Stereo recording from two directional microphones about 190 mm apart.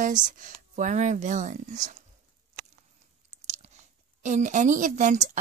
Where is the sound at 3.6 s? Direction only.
35° right (ahead or behind).